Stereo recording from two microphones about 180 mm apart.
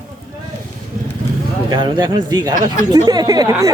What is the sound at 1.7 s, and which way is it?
A woman's voice, 25° right (ahead or behind).